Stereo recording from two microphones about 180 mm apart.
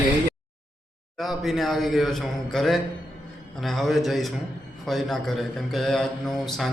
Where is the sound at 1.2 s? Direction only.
Centre (ahead or behind).